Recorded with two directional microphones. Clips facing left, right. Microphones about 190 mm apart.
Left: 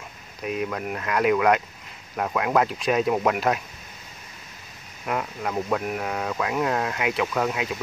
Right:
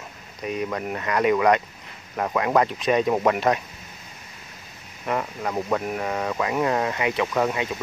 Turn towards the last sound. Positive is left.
turn(degrees=0)  # may be behind; listen again after turning